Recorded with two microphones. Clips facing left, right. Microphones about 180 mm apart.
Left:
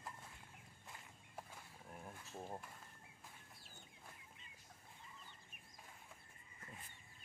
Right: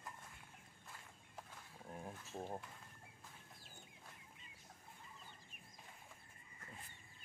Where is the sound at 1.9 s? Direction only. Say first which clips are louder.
Right 4 dB; 25° right (ahead or behind).